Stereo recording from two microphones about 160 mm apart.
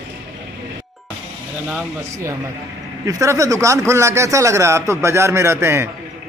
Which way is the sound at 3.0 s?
20° right (ahead or behind).